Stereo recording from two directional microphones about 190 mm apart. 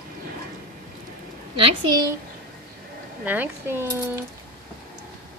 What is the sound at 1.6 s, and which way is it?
Speech, 20° right (ahead or behind).